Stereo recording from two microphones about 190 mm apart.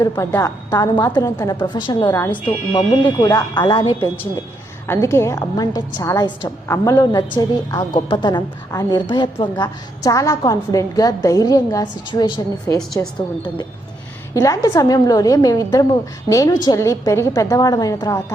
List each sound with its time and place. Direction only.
0.0 s a woman's voice: 15° left (ahead or behind)
4.9 s a woman's voice: 15° left (ahead or behind)